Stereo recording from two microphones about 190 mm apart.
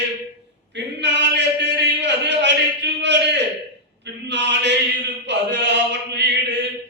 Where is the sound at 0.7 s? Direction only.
65° right (ahead or behind).